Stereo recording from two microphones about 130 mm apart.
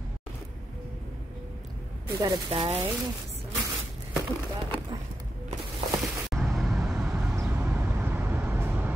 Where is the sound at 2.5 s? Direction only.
45° right (ahead or behind).